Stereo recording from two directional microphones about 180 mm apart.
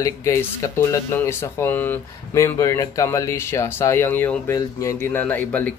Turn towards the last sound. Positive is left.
turn(degrees=10)  # may be behind; listen again after turning